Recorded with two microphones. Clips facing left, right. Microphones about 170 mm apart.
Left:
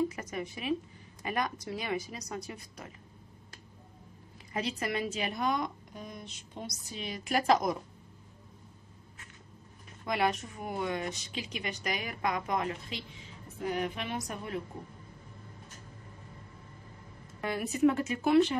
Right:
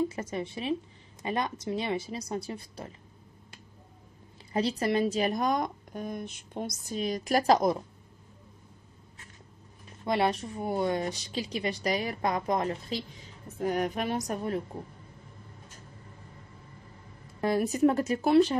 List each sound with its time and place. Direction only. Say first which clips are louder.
0.1 s a woman's voice: right 4 dB; 30° right (ahead or behind)
4.5 s a woman's voice: right 6 dB; 35° right (ahead or behind)
10.0 s a woman's voice: right 3 dB; 30° right (ahead or behind)
17.4 s a woman's voice: right 4 dB; 40° right (ahead or behind)